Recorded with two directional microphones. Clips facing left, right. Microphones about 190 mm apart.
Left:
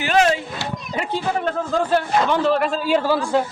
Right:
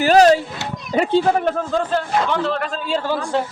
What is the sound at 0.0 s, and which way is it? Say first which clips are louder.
Speech: right 6 dB; 35° right (ahead or behind).